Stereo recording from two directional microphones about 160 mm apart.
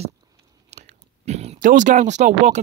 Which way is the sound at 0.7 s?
45° right (ahead or behind).